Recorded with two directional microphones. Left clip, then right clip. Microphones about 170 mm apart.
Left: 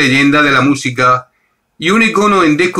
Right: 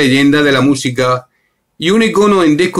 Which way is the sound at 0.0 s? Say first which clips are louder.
Left 1 dB; 25° right (ahead or behind).